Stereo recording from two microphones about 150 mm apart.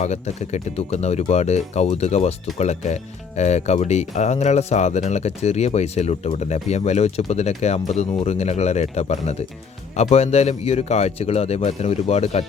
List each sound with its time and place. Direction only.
0.0 s speech: 50° left (ahead or behind)